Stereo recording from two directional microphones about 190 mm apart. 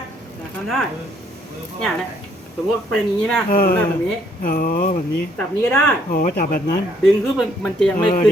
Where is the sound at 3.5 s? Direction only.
50° left (ahead or behind).